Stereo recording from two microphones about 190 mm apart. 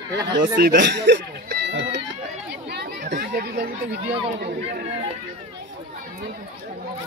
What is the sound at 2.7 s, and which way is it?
Chatter, 50° right (ahead or behind).